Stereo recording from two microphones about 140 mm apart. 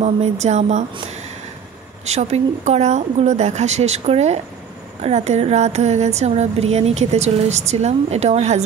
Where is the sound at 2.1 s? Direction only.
50° right (ahead or behind).